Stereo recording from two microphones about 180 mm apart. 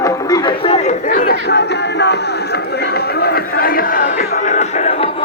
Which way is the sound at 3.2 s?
55° left (ahead or behind).